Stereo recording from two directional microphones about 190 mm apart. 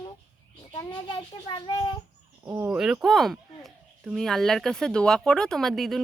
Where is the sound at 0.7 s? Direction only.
20° left (ahead or behind).